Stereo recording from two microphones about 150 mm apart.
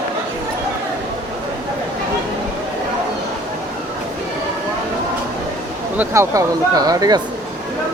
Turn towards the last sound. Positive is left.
turn(degrees=-25)  # may be behind; listen again after turning